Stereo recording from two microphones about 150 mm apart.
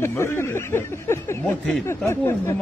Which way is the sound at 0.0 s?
15° left (ahead or behind).